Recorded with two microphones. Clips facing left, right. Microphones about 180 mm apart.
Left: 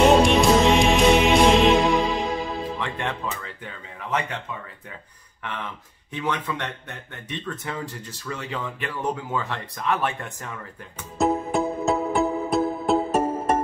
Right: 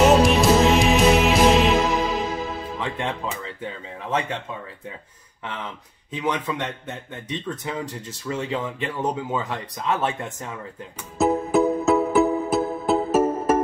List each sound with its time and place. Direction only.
0.0 s music: centre (ahead or behind)
2.8 s speech: 15° right (ahead or behind)
5.4 s speech: 20° right (ahead or behind)
11.1 s music: centre (ahead or behind)